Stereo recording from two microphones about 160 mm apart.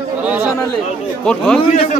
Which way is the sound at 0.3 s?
5° right (ahead or behind).